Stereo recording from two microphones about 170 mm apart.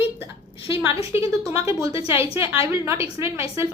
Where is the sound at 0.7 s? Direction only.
35° left (ahead or behind).